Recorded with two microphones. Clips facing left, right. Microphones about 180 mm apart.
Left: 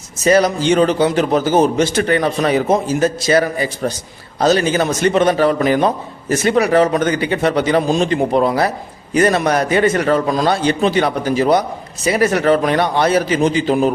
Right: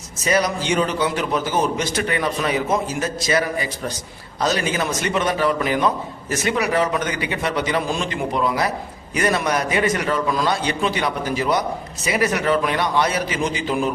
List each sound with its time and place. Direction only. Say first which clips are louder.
0.3 s a man's voice: left 6 dB; 30° left (ahead or behind)
10.0 s a man's voice: left 6 dB; 45° left (ahead or behind)